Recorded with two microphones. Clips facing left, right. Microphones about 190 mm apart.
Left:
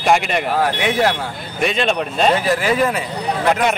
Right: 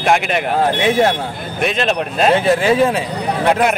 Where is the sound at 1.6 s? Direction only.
Centre (ahead or behind).